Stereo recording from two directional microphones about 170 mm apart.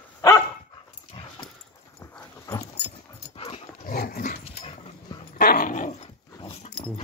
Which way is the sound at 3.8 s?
60° left (ahead or behind).